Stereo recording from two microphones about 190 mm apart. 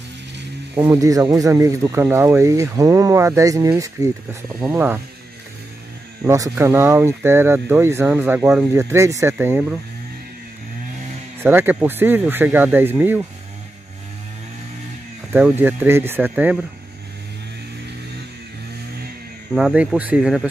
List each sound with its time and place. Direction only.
0.7 s speech: 20° right (ahead or behind)
6.2 s speech: 15° right (ahead or behind)
11.4 s speech: 10° right (ahead or behind)
15.3 s speech: 10° right (ahead or behind)
19.5 s speech: 5° right (ahead or behind)